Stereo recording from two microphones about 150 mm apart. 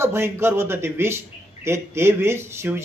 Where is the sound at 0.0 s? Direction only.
15° right (ahead or behind).